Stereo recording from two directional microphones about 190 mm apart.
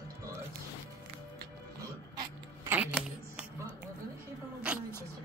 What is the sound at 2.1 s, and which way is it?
Throat clearing, 20° right (ahead or behind).